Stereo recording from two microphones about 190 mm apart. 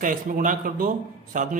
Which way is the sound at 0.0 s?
45° right (ahead or behind).